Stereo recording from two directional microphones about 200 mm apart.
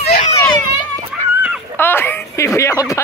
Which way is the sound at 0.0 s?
50° left (ahead or behind).